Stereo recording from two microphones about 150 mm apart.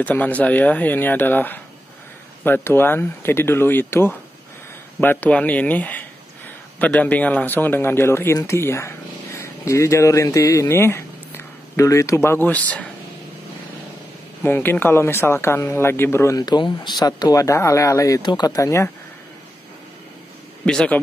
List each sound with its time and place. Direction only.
0.0 s speech: 10° left (ahead or behind)
14.4 s speech: 15° left (ahead or behind)
20.6 s speech: 5° left (ahead or behind)